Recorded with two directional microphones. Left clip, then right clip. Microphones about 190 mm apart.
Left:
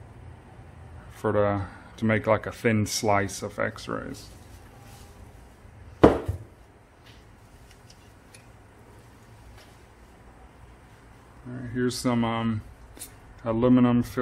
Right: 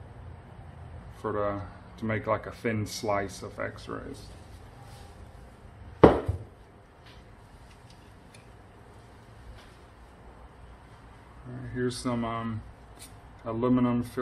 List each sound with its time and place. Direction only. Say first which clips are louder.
1.2 s speech: left 6 dB; 45° left (ahead or behind)
11.7 s speech: left 4 dB; 60° left (ahead or behind)